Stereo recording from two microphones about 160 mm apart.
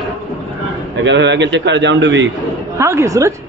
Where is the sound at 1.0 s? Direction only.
90° right.